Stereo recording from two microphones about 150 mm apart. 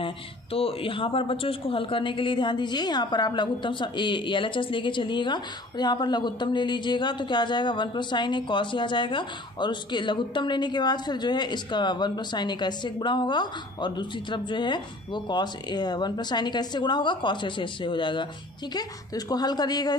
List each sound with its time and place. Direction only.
0.0 s a woman's voice: 40° left (ahead or behind)